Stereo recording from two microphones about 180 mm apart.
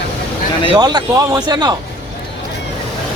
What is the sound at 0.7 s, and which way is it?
Speech, 20° right (ahead or behind).